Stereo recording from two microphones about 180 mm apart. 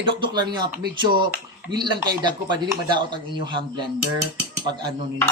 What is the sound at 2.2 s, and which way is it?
Speech, 25° right (ahead or behind).